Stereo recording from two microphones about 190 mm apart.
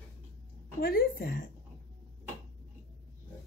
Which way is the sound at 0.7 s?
55° left (ahead or behind).